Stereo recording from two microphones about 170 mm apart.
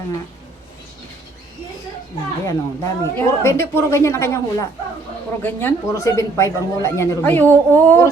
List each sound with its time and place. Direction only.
2.4 s a woman's voice: 20° left (ahead or behind)